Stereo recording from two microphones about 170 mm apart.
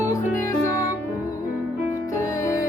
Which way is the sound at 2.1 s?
15° left (ahead or behind).